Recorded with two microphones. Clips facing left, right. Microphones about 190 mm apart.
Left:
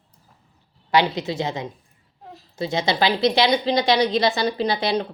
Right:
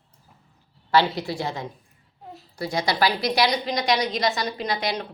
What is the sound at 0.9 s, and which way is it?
Speech, 20° left (ahead or behind).